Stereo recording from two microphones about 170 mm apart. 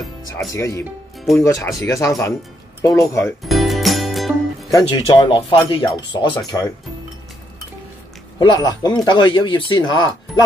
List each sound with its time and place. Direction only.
0.5 s speech: 20° left (ahead or behind)
3.4 s music: centre (ahead or behind)
4.6 s speech: 20° left (ahead or behind)
8.4 s speech: 25° left (ahead or behind)